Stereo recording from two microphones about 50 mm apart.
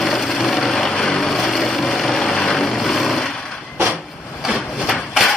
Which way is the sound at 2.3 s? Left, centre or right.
Centre.